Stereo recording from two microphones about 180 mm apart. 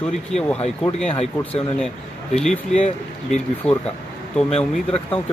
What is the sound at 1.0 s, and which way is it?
Speech, 35° left (ahead or behind).